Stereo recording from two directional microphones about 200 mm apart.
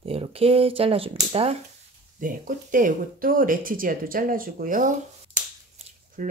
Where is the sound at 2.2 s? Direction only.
45° right (ahead or behind).